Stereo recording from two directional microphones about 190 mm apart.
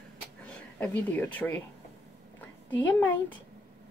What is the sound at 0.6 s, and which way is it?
Speech, 10° left (ahead or behind).